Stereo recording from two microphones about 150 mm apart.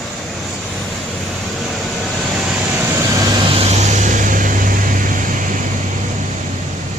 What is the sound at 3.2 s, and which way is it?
Vehicle, 35° right (ahead or behind).